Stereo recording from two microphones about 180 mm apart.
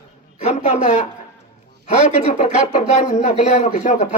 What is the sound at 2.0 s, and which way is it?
Speech, 40° left (ahead or behind).